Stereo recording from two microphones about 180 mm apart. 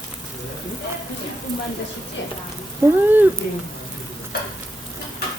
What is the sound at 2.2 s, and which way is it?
Speech, 80° left.